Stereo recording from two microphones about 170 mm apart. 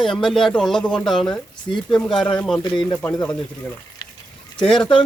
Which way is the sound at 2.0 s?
5° left (ahead or behind).